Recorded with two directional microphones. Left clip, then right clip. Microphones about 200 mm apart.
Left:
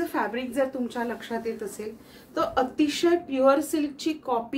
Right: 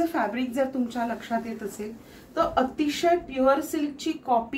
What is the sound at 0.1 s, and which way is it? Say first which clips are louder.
A woman's voice: right 1 dB; 20° left (ahead or behind).